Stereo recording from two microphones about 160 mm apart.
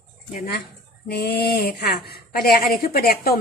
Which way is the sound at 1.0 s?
85° left.